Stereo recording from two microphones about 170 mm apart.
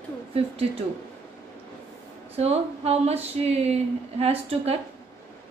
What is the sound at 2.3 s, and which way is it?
Speech, 35° right (ahead or behind).